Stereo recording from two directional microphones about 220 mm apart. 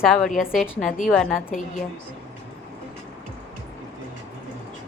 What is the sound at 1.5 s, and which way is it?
Speech, 35° left (ahead or behind).